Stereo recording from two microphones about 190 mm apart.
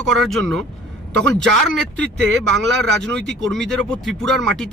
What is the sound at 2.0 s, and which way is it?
Speech, 5° left (ahead or behind).